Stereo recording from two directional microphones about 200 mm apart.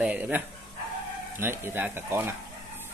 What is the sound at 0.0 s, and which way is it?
Speech, 10° right (ahead or behind).